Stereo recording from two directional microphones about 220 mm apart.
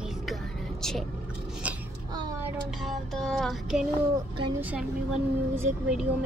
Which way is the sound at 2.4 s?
5° right (ahead or behind).